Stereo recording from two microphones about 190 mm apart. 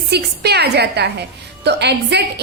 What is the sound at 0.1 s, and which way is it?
A woman's voice, 60° right (ahead or behind).